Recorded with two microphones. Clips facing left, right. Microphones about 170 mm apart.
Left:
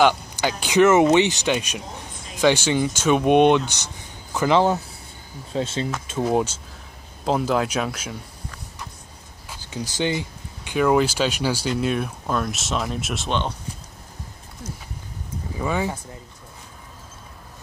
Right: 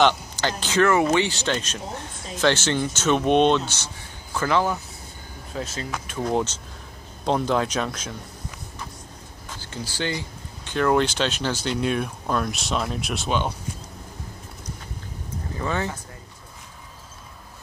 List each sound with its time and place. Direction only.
0.0 s speech: 10° left (ahead or behind); by 5.9 s 25° left (ahead or behind)
6.2 s speech: 10° left (ahead or behind)
9.5 s speech: 15° left (ahead or behind); by 13.5 s 5° right (ahead or behind)
15.5 s speech: 10° left (ahead or behind)